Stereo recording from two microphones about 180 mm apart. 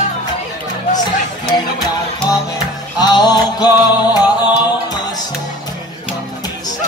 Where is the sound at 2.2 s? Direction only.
20° left (ahead or behind).